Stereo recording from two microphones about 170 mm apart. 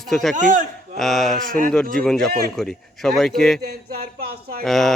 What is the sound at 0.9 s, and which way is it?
Speech, centre (ahead or behind).